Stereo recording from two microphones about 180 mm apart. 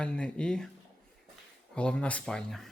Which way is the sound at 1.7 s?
5° left (ahead or behind).